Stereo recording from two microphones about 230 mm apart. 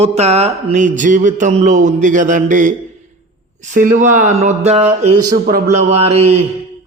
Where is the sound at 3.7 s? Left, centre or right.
Right.